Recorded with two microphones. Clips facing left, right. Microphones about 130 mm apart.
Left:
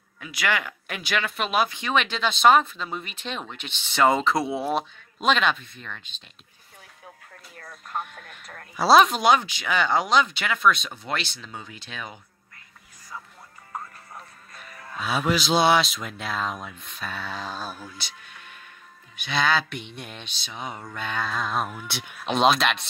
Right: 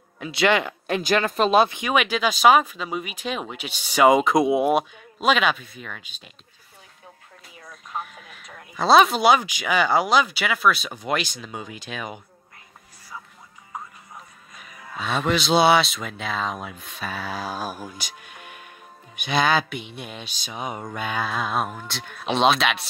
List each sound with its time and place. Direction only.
0.2 s speech: 25° right (ahead or behind)
1.7 s speech: 15° right (ahead or behind)
7.5 s a sound: centre (ahead or behind)
8.7 s speech: centre (ahead or behind); by 12.2 s 15° right (ahead or behind)
13.7 s music: 5° right (ahead or behind)
15.0 s speech: 5° left (ahead or behind); by 19.6 s 15° right (ahead or behind)
19.7 s speech: 5° right (ahead or behind)